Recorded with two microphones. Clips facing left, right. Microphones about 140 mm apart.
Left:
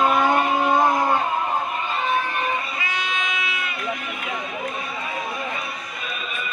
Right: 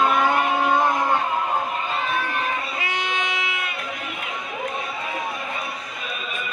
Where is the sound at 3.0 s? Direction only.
60° right (ahead or behind).